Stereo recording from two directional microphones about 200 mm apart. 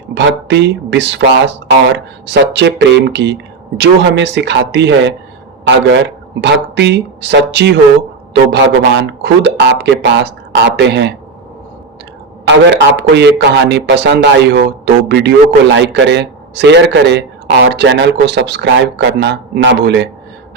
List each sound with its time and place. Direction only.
0.1 s speech: 60° right (ahead or behind)
12.7 s speech: 60° right (ahead or behind)